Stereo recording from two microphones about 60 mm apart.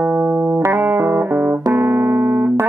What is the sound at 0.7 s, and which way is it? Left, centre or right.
Music, right.